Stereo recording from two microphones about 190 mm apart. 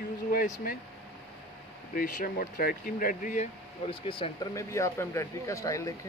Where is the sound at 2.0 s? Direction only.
45° left (ahead or behind).